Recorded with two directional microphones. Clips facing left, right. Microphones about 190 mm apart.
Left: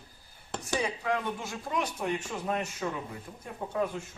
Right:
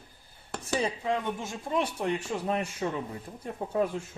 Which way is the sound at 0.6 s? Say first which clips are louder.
Right 2 dB; 25° right (ahead or behind).